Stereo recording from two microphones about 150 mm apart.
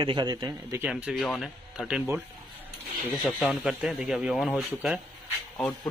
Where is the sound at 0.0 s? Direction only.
30° right (ahead or behind).